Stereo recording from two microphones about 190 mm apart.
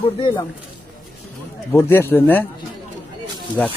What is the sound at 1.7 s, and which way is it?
Speech, 15° left (ahead or behind).